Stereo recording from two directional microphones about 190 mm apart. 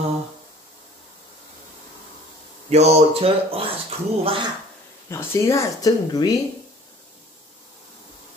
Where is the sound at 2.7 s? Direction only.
35° right (ahead or behind).